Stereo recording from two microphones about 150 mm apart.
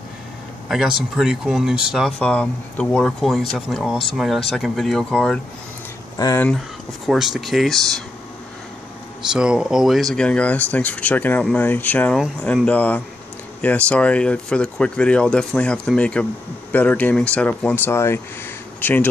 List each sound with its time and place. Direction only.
0.7 s speech: 5° right (ahead or behind)
2.1 s speech: 10° left (ahead or behind)
6.1 s speech: 25° left (ahead or behind)
7.1 s speech: centre (ahead or behind)
9.3 s speech: 5° right (ahead or behind); by 19.0 s 15° left (ahead or behind)